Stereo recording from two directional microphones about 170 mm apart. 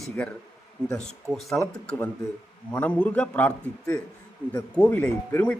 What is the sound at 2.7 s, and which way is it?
A man's voice, 10° left (ahead or behind).